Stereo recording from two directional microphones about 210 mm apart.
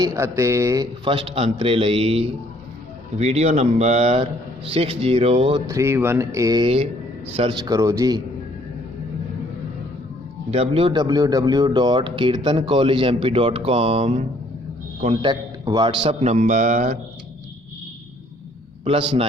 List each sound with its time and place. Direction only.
0.0 s speech: 15° right (ahead or behind)
5.6 s speech: 15° right (ahead or behind)
10.5 s a man's voice: 25° right (ahead or behind)
18.9 s speech: 25° right (ahead or behind)